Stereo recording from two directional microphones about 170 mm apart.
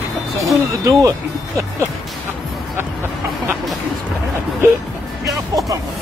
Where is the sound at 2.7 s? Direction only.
15° right (ahead or behind).